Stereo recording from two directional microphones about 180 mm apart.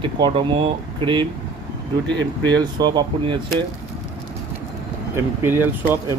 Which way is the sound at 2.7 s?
25° right (ahead or behind).